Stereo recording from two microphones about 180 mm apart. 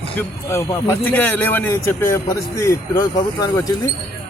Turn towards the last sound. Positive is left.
turn(degrees=20)  # may be behind; listen again after turning